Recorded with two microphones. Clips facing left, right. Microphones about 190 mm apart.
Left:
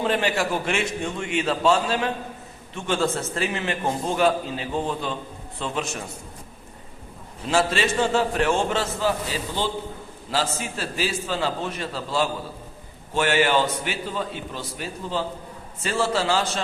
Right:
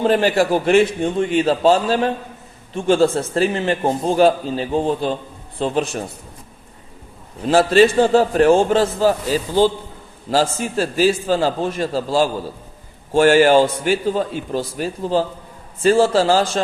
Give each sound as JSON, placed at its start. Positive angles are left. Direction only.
{"t": 0.0, "sound": "a man's voice", "side_deg": -40}
{"t": 7.4, "sound": "a man's voice", "side_deg": -35}